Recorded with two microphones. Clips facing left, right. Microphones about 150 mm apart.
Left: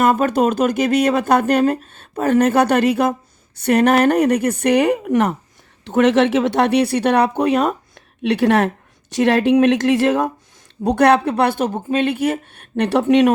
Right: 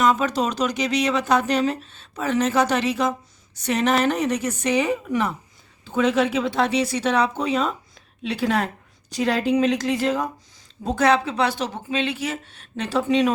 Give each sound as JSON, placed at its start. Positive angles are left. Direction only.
{"t": 0.0, "sound": "a woman's voice", "side_deg": 55}
{"t": 10.8, "sound": "speech", "side_deg": 65}